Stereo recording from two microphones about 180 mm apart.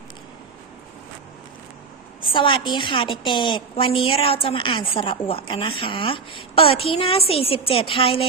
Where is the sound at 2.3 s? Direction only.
25° left (ahead or behind).